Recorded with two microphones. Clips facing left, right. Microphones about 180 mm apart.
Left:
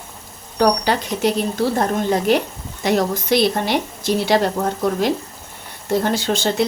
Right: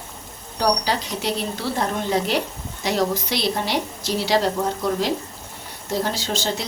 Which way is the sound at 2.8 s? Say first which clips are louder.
Left 3 dB; 55° left (ahead or behind).